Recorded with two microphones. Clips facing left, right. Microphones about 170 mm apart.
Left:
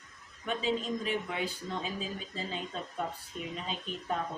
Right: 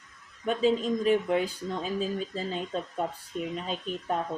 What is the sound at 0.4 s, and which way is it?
Speech, 45° right (ahead or behind).